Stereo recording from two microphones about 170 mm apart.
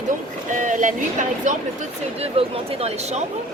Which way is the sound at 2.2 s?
35° right (ahead or behind).